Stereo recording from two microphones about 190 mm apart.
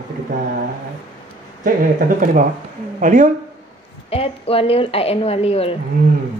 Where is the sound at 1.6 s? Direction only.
45° right (ahead or behind).